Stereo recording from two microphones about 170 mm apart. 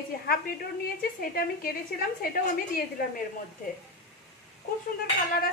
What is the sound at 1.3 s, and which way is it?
A woman's voice, 60° left (ahead or behind).